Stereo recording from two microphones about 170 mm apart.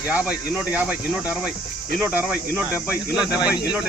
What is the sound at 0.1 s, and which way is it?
Speech, 10° right (ahead or behind).